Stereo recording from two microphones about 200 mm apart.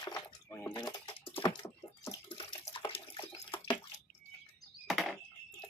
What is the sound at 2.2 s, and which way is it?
Bathtub, 25° left (ahead or behind).